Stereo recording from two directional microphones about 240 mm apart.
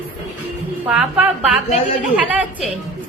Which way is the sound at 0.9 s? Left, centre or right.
Centre.